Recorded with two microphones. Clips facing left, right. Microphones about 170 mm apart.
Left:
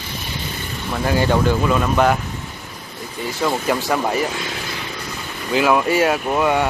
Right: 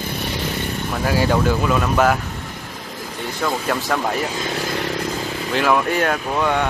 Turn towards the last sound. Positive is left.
turn(degrees=10)  # may be behind; listen again after turning